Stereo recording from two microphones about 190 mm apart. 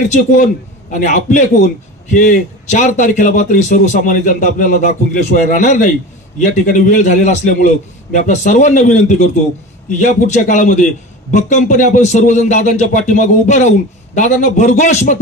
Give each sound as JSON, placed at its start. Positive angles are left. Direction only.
{"t": 0.1, "sound": "a man's voice", "side_deg": 40}